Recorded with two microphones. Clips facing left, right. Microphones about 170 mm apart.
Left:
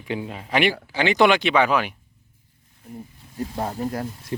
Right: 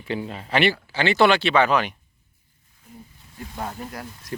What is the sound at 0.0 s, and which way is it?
Speech, 15° left (ahead or behind).